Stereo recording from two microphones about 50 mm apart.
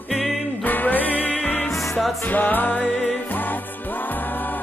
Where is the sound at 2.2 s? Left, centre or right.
Left.